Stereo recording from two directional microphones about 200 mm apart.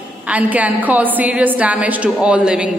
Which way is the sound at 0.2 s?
5° right (ahead or behind).